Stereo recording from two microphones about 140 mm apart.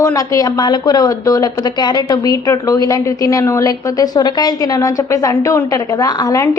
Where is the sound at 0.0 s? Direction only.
25° left (ahead or behind).